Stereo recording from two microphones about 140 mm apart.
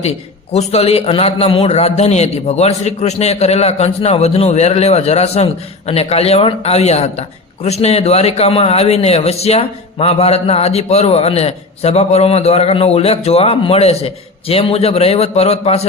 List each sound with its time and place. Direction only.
0.0 s a man's voice: 50° left (ahead or behind)